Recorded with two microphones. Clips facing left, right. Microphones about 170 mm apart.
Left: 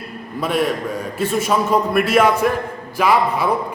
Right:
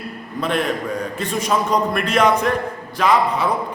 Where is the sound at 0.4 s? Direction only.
5° left (ahead or behind).